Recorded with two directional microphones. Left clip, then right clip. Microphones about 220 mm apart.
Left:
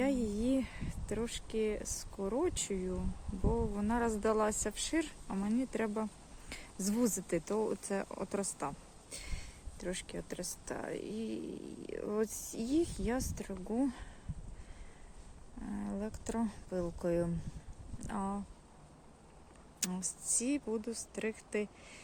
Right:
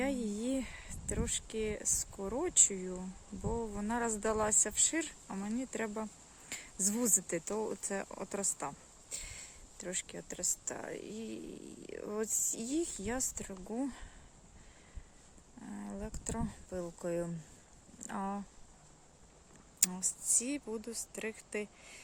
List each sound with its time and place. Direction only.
0.0 s speech: 10° right (ahead or behind)
15.6 s speech: 5° right (ahead or behind)
18.0 s speech: 15° right (ahead or behind)
19.8 s speech: 5° right (ahead or behind)